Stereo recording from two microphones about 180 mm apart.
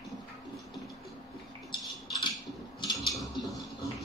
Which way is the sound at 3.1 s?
Centre (ahead or behind).